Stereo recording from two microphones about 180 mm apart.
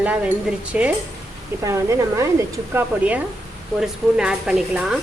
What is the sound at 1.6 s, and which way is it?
Sizzle, 15° right (ahead or behind).